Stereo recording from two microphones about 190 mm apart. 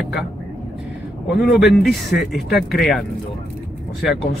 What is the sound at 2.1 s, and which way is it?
Speech, 60° left (ahead or behind).